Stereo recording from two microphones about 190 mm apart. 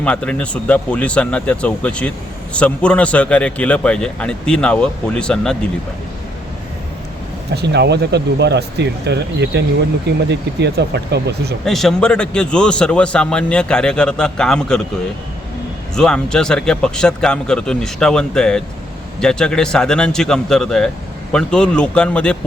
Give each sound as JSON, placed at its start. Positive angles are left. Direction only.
{"t": 0.0, "sound": "speech", "side_deg": 5}
{"t": 7.5, "sound": "speech", "side_deg": -60}
{"t": 11.6, "sound": "speech", "side_deg": 0}
{"t": 16.0, "sound": "speech", "side_deg": 5}